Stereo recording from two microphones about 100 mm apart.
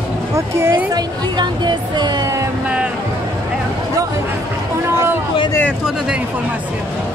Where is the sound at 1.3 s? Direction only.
45° right (ahead or behind).